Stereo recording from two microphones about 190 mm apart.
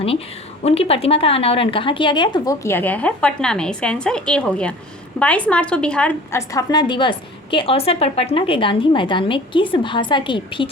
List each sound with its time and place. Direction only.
0.6 s a woman's voice: 30° left (ahead or behind)